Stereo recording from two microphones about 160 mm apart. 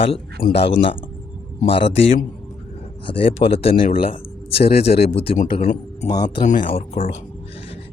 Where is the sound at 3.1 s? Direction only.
35° left (ahead or behind).